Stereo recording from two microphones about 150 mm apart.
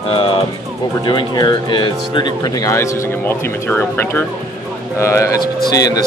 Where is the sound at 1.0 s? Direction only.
30° left (ahead or behind).